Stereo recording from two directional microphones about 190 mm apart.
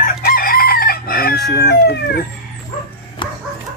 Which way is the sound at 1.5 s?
60° left (ahead or behind).